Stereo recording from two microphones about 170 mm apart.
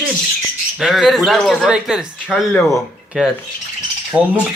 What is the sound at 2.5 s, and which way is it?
Speech, 15° left (ahead or behind).